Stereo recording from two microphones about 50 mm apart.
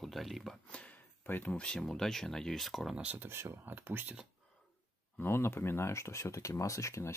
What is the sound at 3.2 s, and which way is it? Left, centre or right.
Speech, right.